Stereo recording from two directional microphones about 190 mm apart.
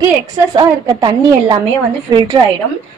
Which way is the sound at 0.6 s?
20° right (ahead or behind).